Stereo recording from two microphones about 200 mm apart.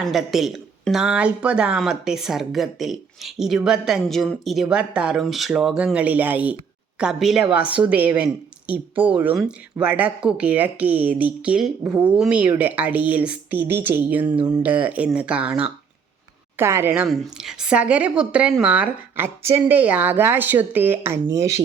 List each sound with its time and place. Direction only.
0.0 s a woman's voice: centre (ahead or behind); by 14.6 s 20° right (ahead or behind)
14.6 s a woman's voice: 10° right (ahead or behind)